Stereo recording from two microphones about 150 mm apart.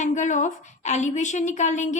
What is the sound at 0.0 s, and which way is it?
A child's voice, 55° left (ahead or behind).